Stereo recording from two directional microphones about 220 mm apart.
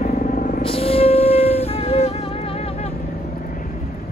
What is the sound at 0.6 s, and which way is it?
Wind instrument, 25° left (ahead or behind).